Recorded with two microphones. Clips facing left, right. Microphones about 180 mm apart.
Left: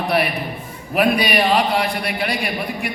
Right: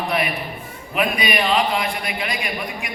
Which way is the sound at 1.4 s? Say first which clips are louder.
Left 3 dB; 35° left (ahead or behind).